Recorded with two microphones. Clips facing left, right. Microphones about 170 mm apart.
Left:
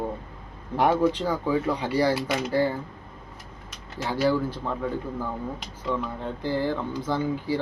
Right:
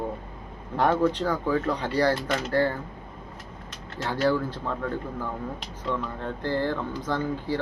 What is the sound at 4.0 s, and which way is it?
Speech, 10° left (ahead or behind).